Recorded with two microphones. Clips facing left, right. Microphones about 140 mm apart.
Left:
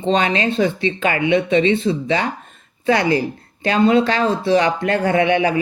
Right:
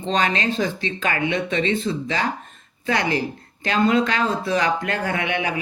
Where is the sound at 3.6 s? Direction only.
30° left (ahead or behind).